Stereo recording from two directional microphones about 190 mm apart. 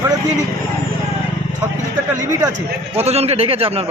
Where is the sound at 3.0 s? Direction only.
35° right (ahead or behind).